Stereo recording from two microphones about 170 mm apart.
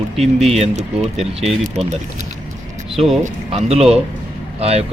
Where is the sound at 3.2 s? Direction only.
40° right (ahead or behind).